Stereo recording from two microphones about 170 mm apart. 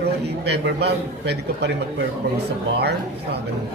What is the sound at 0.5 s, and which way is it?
Speech, 80° right.